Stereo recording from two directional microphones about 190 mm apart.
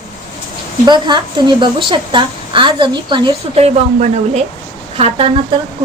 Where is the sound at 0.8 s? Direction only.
25° right (ahead or behind).